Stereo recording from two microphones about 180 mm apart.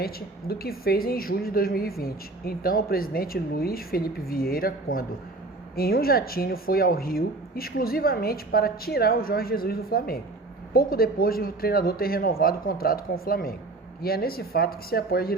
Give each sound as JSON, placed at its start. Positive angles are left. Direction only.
{"t": 0.0, "sound": "a woman's voice", "side_deg": 60}